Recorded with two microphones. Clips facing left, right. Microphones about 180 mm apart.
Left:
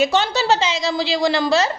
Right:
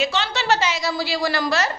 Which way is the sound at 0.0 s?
45° left (ahead or behind).